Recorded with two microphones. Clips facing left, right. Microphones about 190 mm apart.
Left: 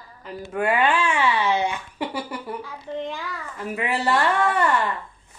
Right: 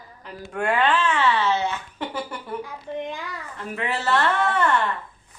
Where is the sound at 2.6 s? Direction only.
15° right (ahead or behind).